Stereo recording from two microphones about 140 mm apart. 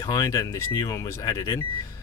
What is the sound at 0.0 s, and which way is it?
Speech, 25° left (ahead or behind).